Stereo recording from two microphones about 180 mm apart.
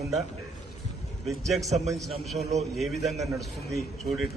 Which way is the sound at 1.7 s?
Centre (ahead or behind).